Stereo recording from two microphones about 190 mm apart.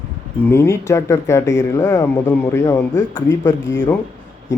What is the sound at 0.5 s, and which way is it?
Speech, 15° left (ahead or behind).